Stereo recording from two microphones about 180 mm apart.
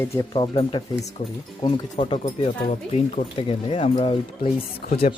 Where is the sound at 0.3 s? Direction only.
25° left (ahead or behind).